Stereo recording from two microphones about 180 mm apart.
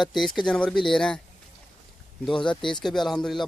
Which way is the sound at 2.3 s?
25° left (ahead or behind).